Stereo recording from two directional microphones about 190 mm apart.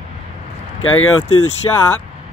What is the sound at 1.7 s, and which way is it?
Speech, 15° left (ahead or behind).